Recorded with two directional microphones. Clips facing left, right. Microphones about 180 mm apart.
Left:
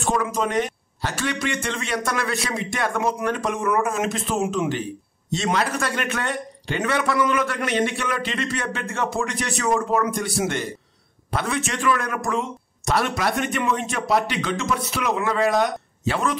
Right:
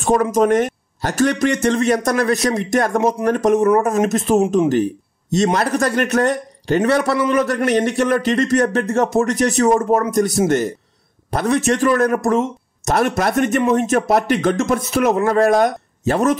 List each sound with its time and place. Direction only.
0.0 s speech: 45° right (ahead or behind)